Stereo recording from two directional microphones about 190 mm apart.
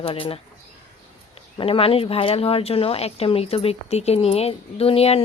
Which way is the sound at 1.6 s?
30° left (ahead or behind).